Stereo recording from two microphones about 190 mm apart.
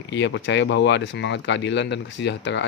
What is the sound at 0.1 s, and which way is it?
Speech, 70° left (ahead or behind).